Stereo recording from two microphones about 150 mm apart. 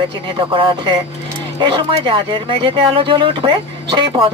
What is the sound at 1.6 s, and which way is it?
Speech, 35° right (ahead or behind).